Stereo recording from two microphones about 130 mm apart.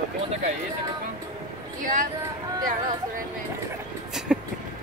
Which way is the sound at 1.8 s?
90° right.